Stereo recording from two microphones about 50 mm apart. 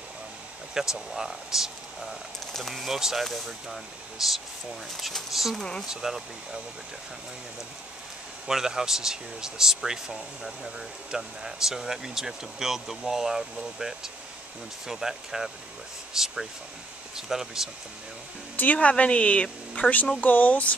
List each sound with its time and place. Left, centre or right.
0.7 s speech: centre
5.6 s speech: centre
5.9 s speech: centre
8.5 s speech: centre
18.6 s a woman's voice: left